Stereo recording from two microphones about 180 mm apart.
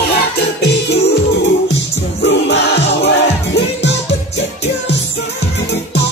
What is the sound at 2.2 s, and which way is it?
Music, 75° left (ahead or behind).